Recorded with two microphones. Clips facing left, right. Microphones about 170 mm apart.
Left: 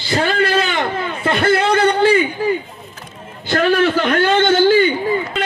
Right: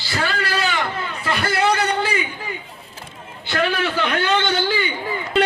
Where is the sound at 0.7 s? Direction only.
55° left (ahead or behind).